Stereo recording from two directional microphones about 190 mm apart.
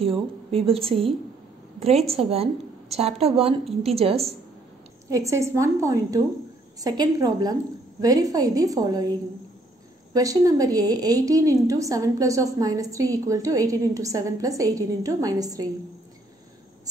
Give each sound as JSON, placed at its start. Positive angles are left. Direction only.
{"t": 0.0, "sound": "a woman's voice", "side_deg": -30}
{"t": 2.0, "sound": "a woman's voice", "side_deg": -30}
{"t": 5.1, "sound": "a woman's voice", "side_deg": -15}